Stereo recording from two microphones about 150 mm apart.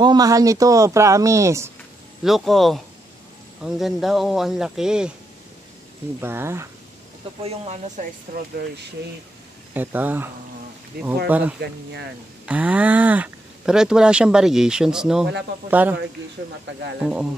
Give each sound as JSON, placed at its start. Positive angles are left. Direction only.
{"t": 0.0, "sound": "speech", "side_deg": -25}
{"t": 2.2, "sound": "speech", "side_deg": 0}
{"t": 6.2, "sound": "speech", "side_deg": -15}
{"t": 7.4, "sound": "speech", "side_deg": -45}
{"t": 8.6, "sound": "speech", "side_deg": -90}
{"t": 9.8, "sound": "speech", "side_deg": -10}
{"t": 17.0, "sound": "speech", "side_deg": -5}